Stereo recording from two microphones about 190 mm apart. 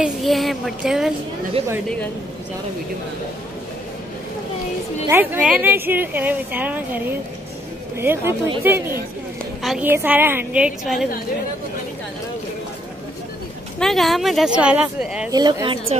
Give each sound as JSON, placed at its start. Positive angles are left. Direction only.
{"t": 0.0, "sound": "speech", "side_deg": 0}
{"t": 5.0, "sound": "speech", "side_deg": -10}
{"t": 9.6, "sound": "speech", "side_deg": 0}
{"t": 13.7, "sound": "speech", "side_deg": 0}
{"t": 15.3, "sound": "speech", "side_deg": -25}